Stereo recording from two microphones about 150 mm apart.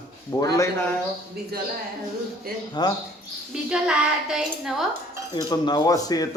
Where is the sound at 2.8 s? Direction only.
30° left (ahead or behind).